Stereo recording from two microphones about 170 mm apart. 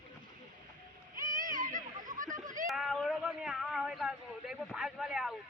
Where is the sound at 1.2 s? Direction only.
50° right (ahead or behind).